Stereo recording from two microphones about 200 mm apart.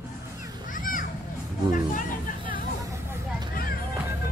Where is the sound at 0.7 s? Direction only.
40° left (ahead or behind).